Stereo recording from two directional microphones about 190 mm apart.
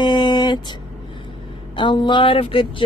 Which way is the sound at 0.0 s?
25° left (ahead or behind).